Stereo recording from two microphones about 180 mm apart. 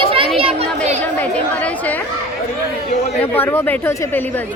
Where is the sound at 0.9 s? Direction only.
10° left (ahead or behind).